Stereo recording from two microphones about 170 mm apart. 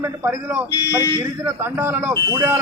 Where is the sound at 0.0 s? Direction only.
15° right (ahead or behind).